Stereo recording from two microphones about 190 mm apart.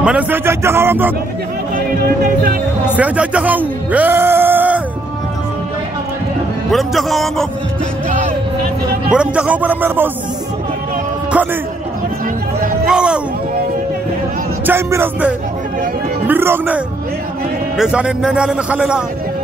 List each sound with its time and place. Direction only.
0.0 s speech: 10° right (ahead or behind)
1.8 s speech: 50° right (ahead or behind)
3.0 s a man's voice: 5° right (ahead or behind)
6.7 s a man's voice: centre (ahead or behind)
9.1 s speech: 5° right (ahead or behind)
12.8 s speech: 5° right (ahead or behind)
14.7 s a man's voice: 10° right (ahead or behind)